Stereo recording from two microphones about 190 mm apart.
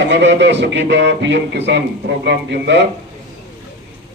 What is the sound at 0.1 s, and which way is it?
A man's voice, 65° right (ahead or behind).